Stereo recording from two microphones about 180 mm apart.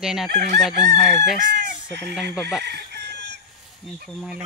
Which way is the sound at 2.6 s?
65° right (ahead or behind).